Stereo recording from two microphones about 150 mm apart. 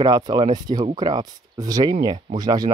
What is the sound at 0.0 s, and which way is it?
Speech, 30° right (ahead or behind).